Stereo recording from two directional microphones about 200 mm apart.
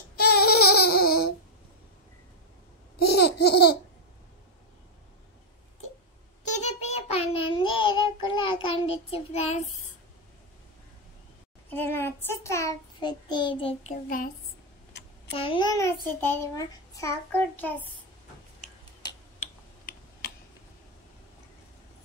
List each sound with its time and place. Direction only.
0.2 s a sound: 50° left (ahead or behind)
3.3 s laughter: 55° left (ahead or behind)
6.4 s child singing: 35° left (ahead or behind)
11.7 s child singing: 10° left (ahead or behind); by 13.9 s 25° left (ahead or behind)
14.0 s a woman's voice: 45° left (ahead or behind)
14.9 s a sound: 55° left (ahead or behind)
15.3 s a child's voice: 25° left (ahead or behind); by 17.8 s 10° left (ahead or behind)
19.9 s typing: 50° left (ahead or behind)